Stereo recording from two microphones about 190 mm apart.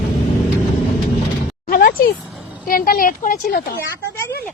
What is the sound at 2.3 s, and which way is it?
Vehicle, centre (ahead or behind).